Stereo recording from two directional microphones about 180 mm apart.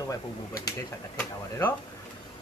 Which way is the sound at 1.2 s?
10° left (ahead or behind).